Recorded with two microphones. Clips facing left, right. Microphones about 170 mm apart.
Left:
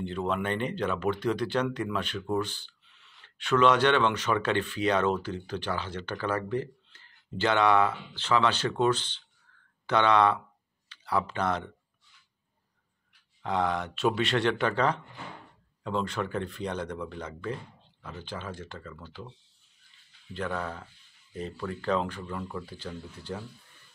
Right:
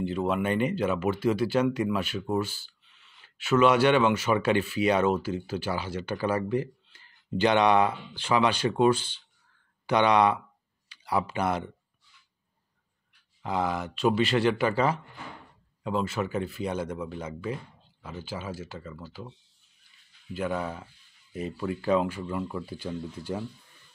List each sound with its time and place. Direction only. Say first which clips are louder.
0.0 s speech: right 3 dB; 5° right (ahead or behind)
13.4 s speech: even; 5° right (ahead or behind)
20.3 s speech: right 3 dB; 10° right (ahead or behind)